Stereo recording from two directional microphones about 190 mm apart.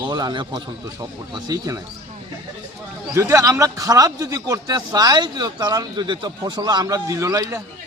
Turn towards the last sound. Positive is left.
turn(degrees=-15)  # may be behind; listen again after turning